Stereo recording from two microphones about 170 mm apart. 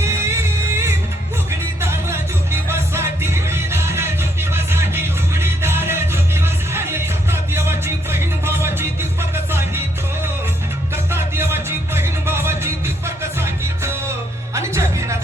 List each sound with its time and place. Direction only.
0.0 s music: 15° right (ahead or behind)
2.6 s music: 15° right (ahead or behind)
11.1 s music: 15° right (ahead or behind)
14.5 s music: 15° right (ahead or behind)